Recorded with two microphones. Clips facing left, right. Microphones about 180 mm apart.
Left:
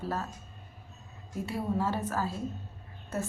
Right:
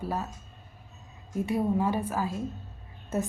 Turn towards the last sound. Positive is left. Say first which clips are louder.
# right 4 dB
turn(degrees=-20)  # may be behind; listen again after turning